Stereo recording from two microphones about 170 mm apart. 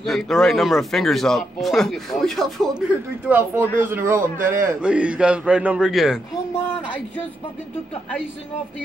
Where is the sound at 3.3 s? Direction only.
10° right (ahead or behind).